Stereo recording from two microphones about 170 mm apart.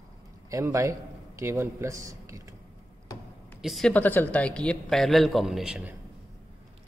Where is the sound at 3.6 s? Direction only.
Centre (ahead or behind).